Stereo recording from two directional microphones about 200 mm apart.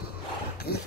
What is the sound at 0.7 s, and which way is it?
Speech, 50° left (ahead or behind).